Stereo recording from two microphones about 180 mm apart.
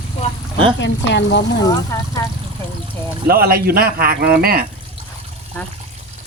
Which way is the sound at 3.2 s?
55° right (ahead or behind).